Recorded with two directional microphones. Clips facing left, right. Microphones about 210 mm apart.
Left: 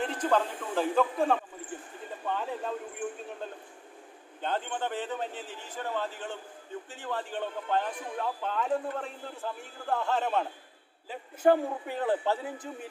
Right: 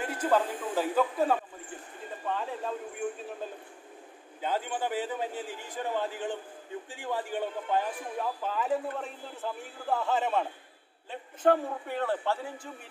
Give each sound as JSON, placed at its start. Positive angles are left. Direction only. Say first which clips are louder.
{"t": 0.0, "sound": "a man's voice", "louder": "even", "side_deg": -5}
{"t": 4.4, "sound": "a man's voice", "louder": "right 1 dB", "side_deg": -5}
{"t": 11.1, "sound": "a man's voice", "louder": "left 1 dB", "side_deg": 10}